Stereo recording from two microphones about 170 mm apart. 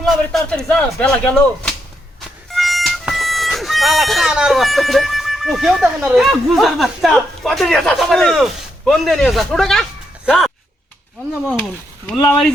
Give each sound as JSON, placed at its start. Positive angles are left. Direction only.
{"t": 0.0, "sound": "speech", "side_deg": 5}